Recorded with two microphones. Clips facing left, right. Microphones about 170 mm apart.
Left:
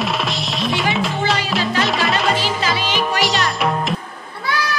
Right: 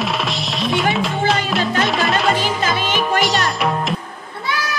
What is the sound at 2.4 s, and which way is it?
Music, 50° right (ahead or behind).